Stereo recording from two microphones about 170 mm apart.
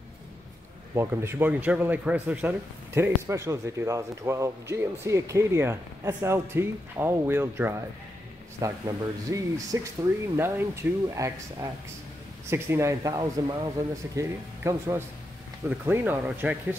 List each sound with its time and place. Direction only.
0.9 s a man's voice: 15° right (ahead or behind)